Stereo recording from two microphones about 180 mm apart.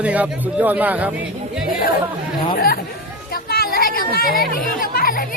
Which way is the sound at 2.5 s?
55° left (ahead or behind).